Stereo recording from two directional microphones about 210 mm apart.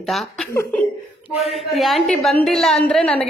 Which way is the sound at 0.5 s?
10° left (ahead or behind).